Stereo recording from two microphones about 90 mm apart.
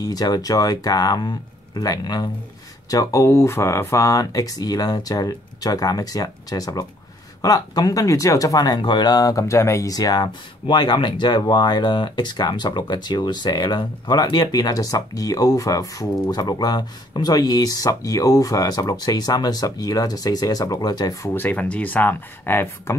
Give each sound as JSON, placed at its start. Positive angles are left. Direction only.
{"t": 0.0, "sound": "speech", "side_deg": 45}
{"t": 2.9, "sound": "speech", "side_deg": 35}
{"t": 21.3, "sound": "speech", "side_deg": 20}